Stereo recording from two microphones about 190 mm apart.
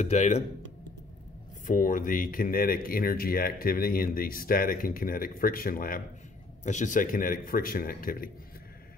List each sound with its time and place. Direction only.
0.0 s speech: 35° left (ahead or behind)
1.7 s speech: 45° left (ahead or behind)